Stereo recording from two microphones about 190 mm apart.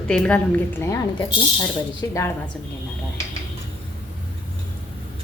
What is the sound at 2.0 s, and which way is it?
Speech, 15° left (ahead or behind).